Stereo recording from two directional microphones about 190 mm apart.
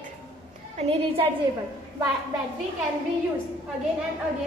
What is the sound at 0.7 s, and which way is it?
Speech, 30° right (ahead or behind).